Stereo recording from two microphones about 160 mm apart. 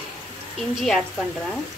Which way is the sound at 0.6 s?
Centre (ahead or behind).